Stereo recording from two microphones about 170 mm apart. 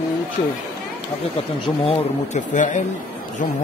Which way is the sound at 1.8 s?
40° left (ahead or behind).